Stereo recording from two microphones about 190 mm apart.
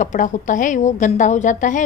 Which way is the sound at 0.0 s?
40° left (ahead or behind).